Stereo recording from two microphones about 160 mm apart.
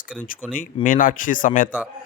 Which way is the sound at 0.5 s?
55° left (ahead or behind).